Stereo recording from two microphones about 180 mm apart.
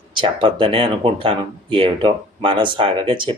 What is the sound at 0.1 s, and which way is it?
Speech, 25° right (ahead or behind).